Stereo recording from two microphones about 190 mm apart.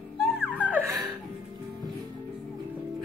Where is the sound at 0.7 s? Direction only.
15° right (ahead or behind).